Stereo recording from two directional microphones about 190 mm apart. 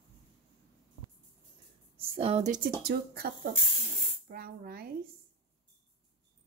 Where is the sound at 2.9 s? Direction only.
55° right (ahead or behind).